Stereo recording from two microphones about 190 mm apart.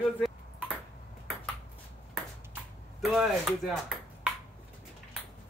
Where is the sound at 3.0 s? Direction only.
Centre (ahead or behind).